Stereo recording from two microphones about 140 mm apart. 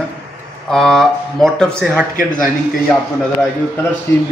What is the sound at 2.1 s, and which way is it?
Speech, 75° left (ahead or behind).